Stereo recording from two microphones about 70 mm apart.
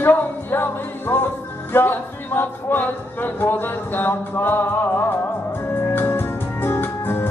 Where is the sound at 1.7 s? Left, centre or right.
Left.